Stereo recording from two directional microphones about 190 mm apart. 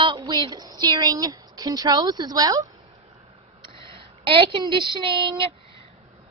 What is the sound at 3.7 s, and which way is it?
Speech, 25° right (ahead or behind).